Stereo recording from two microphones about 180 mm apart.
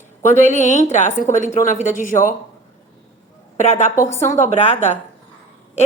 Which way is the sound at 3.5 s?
40° left (ahead or behind).